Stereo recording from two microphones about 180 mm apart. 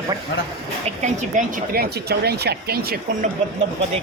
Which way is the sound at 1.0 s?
45° right (ahead or behind).